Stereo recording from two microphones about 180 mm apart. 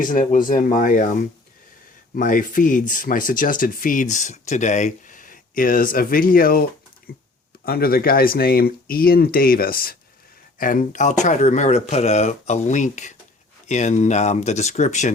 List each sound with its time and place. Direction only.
0.0 s speech: 45° left (ahead or behind)
7.1 s typing: 55° left (ahead or behind)
7.6 s speech: 55° left (ahead or behind); by 15.1 s 40° left (ahead or behind)